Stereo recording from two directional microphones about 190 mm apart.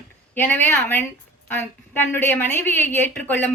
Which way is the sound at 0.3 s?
10° left (ahead or behind).